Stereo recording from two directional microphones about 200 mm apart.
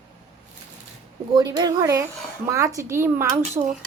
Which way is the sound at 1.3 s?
20° right (ahead or behind).